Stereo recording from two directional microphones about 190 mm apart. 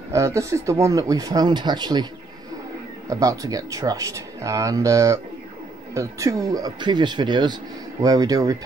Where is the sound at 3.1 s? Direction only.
15° right (ahead or behind).